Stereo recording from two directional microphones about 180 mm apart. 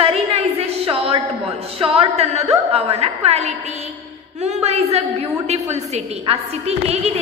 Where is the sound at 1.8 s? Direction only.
35° right (ahead or behind).